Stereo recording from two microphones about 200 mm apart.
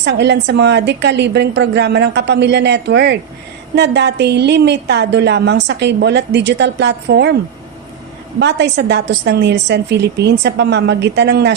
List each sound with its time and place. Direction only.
0.0 s a woman's voice: 60° right (ahead or behind)
8.4 s a woman's voice: 55° right (ahead or behind)